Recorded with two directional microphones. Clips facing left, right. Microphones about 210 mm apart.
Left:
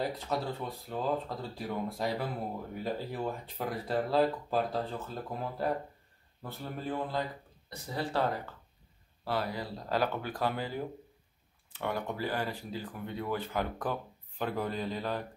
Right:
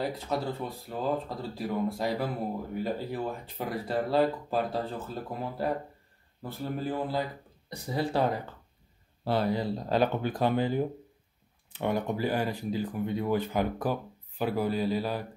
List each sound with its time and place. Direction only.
0.0 s speech: centre (ahead or behind)
9.2 s speech: 25° right (ahead or behind); by 15.2 s 5° right (ahead or behind)